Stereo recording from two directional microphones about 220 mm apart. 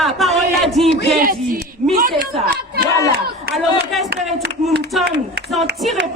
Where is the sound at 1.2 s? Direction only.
40° right (ahead or behind).